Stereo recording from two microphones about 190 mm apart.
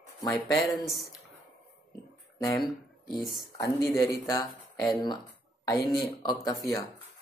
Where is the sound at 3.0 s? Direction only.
Centre (ahead or behind).